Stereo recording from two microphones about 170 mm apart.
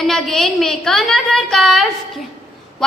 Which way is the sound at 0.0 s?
Centre (ahead or behind).